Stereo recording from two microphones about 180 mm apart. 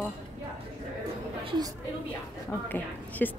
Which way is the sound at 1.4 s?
25° right (ahead or behind).